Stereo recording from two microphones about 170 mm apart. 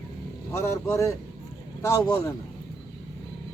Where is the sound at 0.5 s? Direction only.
15° left (ahead or behind).